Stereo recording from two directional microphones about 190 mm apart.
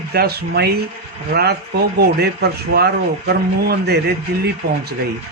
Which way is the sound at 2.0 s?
60° right (ahead or behind).